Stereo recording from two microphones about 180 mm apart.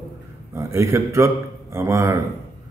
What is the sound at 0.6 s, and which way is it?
A man's voice, 15° right (ahead or behind).